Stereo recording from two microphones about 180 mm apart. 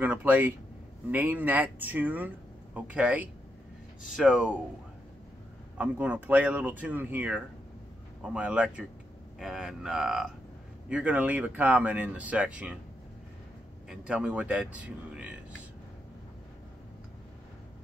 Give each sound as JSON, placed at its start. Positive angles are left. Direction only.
{"t": 0.0, "sound": "a sound", "side_deg": -10}
{"t": 1.1, "sound": "a man's voice", "side_deg": -10}
{"t": 5.8, "sound": "a man's voice", "side_deg": -10}
{"t": 13.8, "sound": "a man's voice", "side_deg": -5}